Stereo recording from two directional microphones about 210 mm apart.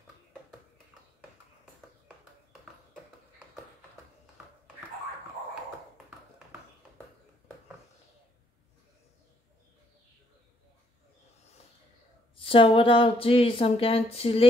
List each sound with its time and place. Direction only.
12.4 s speech: 25° left (ahead or behind)